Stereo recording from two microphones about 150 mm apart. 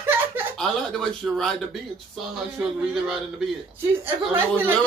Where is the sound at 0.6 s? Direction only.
5° left (ahead or behind).